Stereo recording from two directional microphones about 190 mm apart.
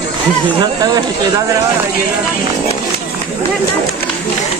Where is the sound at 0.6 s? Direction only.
20° right (ahead or behind).